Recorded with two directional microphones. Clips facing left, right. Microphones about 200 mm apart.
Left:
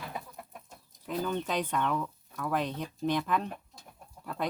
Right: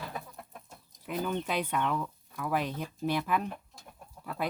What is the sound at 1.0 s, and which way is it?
Speech, 5° right (ahead or behind).